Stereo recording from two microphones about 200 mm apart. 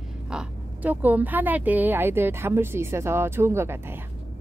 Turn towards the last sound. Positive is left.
turn(degrees=-10)  # may be behind; listen again after turning